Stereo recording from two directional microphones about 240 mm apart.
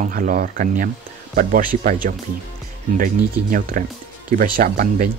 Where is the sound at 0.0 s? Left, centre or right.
Right.